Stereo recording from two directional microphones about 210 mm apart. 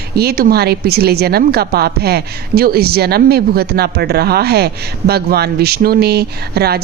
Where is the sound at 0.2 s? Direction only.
45° right (ahead or behind).